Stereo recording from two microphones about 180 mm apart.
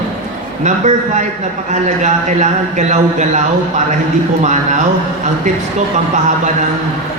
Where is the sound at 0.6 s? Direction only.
40° right (ahead or behind).